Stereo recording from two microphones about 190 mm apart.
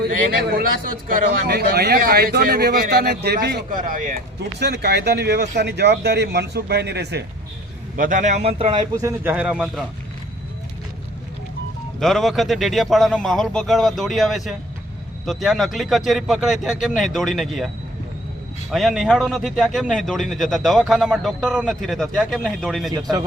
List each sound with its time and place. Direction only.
1.0 s speech: 50° right (ahead or behind)
4.6 s speech: 60° right (ahead or behind)
7.9 s speech: 45° right (ahead or behind)
9.0 s speech: 15° right (ahead or behind)
11.9 s a man's voice: centre (ahead or behind)
18.7 s a man's voice: centre (ahead or behind)